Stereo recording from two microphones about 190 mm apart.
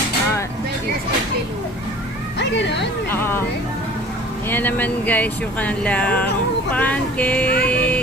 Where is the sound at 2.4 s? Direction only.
70° left (ahead or behind).